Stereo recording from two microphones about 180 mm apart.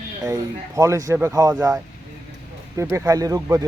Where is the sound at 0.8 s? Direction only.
15° right (ahead or behind).